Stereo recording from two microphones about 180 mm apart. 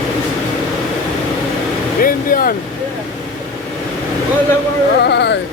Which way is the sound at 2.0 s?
50° left (ahead or behind).